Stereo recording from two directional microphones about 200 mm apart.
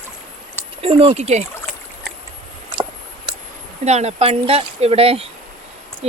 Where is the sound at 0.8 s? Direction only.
30° right (ahead or behind).